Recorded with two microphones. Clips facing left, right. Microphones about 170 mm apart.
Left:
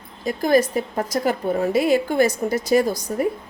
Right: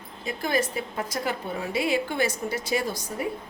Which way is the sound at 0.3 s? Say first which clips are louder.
Left 9 dB; 40° left (ahead or behind).